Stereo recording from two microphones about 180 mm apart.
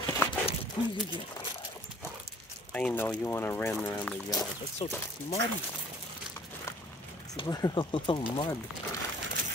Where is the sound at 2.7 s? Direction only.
10° left (ahead or behind).